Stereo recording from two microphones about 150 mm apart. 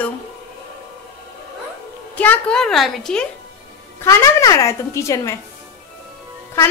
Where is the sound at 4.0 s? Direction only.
20° left (ahead or behind).